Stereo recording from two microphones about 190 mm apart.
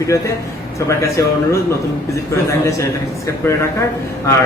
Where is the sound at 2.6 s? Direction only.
15° left (ahead or behind).